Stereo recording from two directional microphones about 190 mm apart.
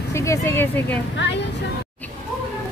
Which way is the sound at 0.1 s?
15° left (ahead or behind).